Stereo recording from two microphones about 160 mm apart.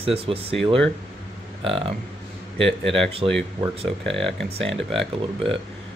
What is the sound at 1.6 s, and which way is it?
Speech, 35° right (ahead or behind).